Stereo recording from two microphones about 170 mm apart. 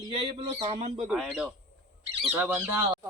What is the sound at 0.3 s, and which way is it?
Speech, 35° right (ahead or behind).